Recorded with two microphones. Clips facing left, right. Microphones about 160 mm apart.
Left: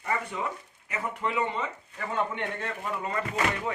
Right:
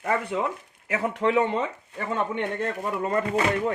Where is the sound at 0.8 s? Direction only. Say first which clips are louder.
Right 8 dB; 90° right.